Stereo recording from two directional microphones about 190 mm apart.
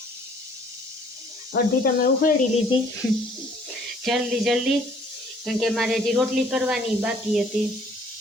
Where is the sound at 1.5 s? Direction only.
55° left (ahead or behind).